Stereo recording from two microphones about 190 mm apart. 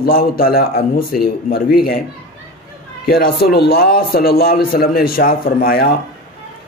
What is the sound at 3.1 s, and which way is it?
Speech, 50° left (ahead or behind).